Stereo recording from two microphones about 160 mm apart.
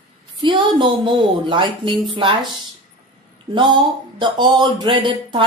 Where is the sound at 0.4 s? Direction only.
30° right (ahead or behind).